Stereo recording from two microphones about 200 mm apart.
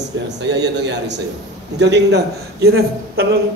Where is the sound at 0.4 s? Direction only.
60° right (ahead or behind).